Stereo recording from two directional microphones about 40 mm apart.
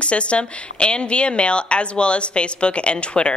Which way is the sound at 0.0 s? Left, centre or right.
Left.